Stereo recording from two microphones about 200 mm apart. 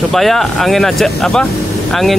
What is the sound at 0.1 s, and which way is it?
Speech, centre (ahead or behind).